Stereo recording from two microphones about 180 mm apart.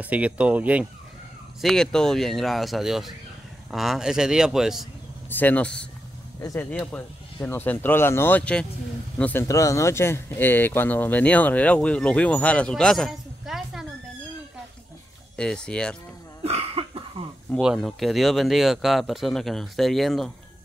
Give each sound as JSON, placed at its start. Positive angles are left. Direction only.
{"t": 0.0, "sound": "speech", "side_deg": -5}
{"t": 1.6, "sound": "speech", "side_deg": 0}
{"t": 5.3, "sound": "speech", "side_deg": 10}
{"t": 15.3, "sound": "speech", "side_deg": 5}
{"t": 16.4, "sound": "cough", "side_deg": -30}
{"t": 17.6, "sound": "speech", "side_deg": 0}